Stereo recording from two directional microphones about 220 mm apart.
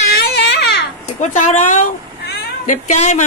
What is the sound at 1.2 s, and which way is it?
Speech, 35° left (ahead or behind).